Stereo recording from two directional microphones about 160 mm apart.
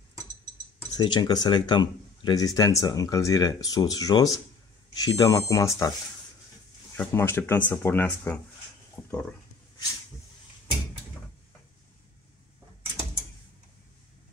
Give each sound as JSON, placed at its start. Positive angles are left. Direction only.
{"t": 0.9, "sound": "speech", "side_deg": 30}
{"t": 7.0, "sound": "speech", "side_deg": 15}
{"t": 8.9, "sound": "a sound", "side_deg": 10}